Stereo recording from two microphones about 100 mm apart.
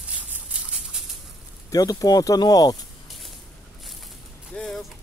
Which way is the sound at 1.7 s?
35° left (ahead or behind).